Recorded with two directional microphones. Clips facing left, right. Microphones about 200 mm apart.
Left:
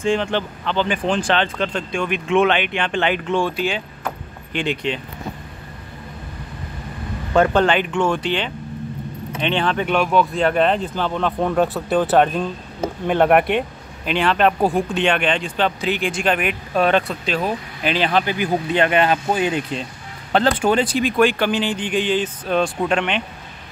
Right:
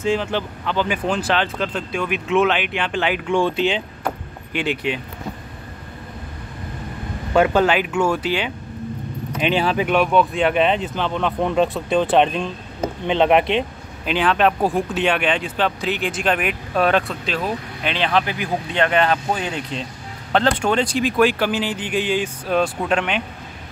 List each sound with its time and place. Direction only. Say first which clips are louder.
0.0 s speech: left 1 dB; 5° right (ahead or behind)
3.3 s speech: right 2 dB; 20° right (ahead or behind)
4.0 s keys jangling: right 2 dB; 10° right (ahead or behind)
7.3 s speech: even; 10° right (ahead or behind)
13.4 s speech: even; 25° right (ahead or behind)
14.0 s speech: even; centre (ahead or behind)